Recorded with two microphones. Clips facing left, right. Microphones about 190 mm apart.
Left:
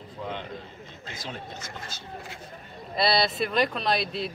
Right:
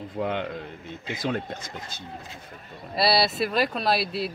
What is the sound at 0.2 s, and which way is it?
Speech, 65° right (ahead or behind).